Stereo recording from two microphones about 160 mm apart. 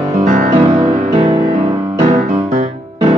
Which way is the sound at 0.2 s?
55° right (ahead or behind).